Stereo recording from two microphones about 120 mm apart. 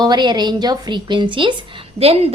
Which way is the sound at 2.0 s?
55° right (ahead or behind).